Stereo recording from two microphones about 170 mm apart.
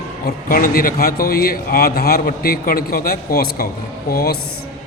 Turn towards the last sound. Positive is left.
turn(degrees=65)  # may be behind; listen again after turning